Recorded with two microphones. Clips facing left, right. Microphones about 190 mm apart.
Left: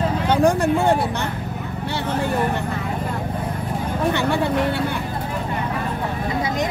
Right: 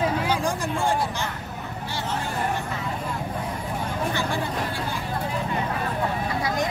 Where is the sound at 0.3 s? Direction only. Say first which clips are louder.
Left 9 dB; 60° left (ahead or behind).